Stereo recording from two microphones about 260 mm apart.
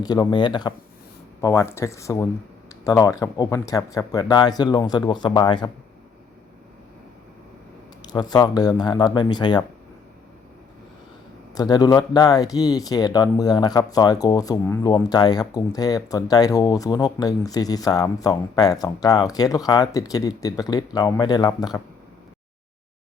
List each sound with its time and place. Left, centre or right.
0.0 s speech: centre
8.0 s speech: centre
11.5 s speech: centre